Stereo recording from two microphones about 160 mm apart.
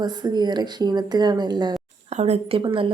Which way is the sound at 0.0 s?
25° right (ahead or behind).